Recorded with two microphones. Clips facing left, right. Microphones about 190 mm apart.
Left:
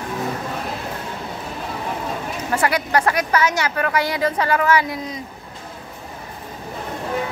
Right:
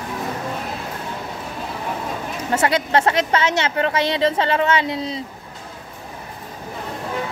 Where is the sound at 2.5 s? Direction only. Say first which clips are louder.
Right 1 dB; 25° right (ahead or behind).